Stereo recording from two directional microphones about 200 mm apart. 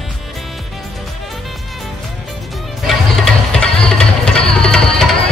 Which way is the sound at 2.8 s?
5° left (ahead or behind).